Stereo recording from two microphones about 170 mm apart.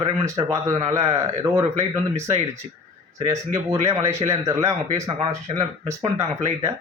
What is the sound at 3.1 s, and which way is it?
Speech, 20° right (ahead or behind).